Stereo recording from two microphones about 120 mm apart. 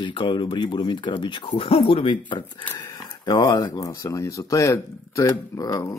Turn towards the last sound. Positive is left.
turn(degrees=30)  # may be behind; listen again after turning